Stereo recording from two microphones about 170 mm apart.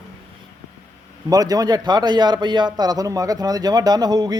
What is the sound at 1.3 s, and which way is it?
A man's voice, 20° right (ahead or behind).